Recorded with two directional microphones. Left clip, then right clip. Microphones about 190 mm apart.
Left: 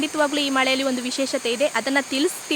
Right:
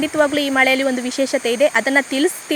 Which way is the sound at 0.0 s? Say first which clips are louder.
Right 5 dB; 15° right (ahead or behind).